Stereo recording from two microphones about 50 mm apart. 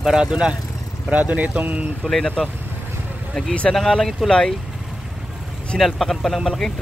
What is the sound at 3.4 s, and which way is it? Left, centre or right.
Speech, centre.